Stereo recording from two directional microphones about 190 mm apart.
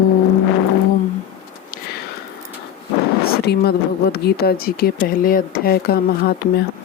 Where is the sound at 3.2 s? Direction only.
55° left (ahead or behind).